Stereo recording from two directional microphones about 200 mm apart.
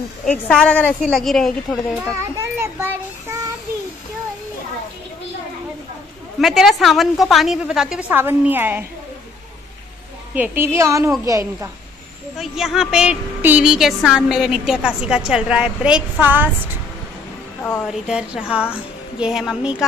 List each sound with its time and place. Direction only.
0.2 s a woman's voice: 5° left (ahead or behind)
2.3 s a child's voice: 10° right (ahead or behind)
6.4 s a woman's voice: centre (ahead or behind)
10.3 s a woman's voice: 10° right (ahead or behind)
12.4 s a woman's voice: centre (ahead or behind)
17.8 s a woman's voice: 5° right (ahead or behind)